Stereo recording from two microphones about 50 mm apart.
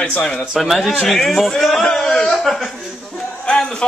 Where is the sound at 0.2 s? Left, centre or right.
Centre.